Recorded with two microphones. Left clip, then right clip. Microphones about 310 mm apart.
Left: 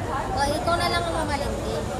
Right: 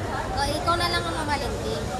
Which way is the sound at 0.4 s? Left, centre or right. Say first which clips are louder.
Even; centre.